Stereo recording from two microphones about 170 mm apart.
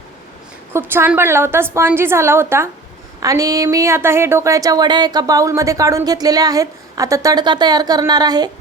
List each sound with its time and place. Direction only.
0.7 s a woman's voice: 15° right (ahead or behind)